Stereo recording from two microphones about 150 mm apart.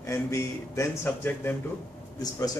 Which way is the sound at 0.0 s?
20° left (ahead or behind).